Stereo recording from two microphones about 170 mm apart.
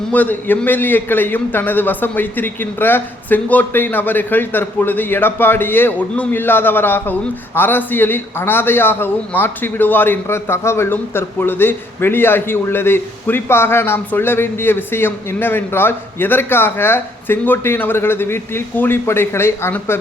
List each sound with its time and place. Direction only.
0.1 s a man's voice: 10° left (ahead or behind)